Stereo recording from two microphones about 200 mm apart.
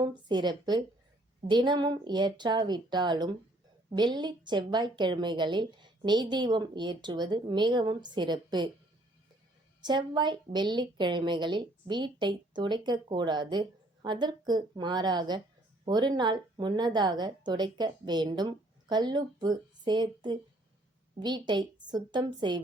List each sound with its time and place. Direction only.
0.0 s a woman's voice: 20° right (ahead or behind)
9.8 s a woman's voice: 20° right (ahead or behind)